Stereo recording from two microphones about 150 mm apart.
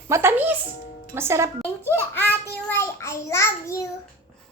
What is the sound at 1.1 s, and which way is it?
Speech, 15° right (ahead or behind).